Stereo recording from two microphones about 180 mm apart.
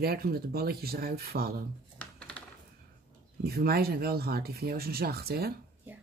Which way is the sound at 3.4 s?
60° right (ahead or behind).